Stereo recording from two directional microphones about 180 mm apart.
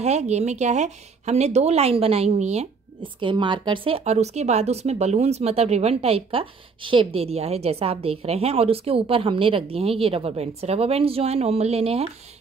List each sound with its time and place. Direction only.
0.0 s a woman's voice: 40° right (ahead or behind)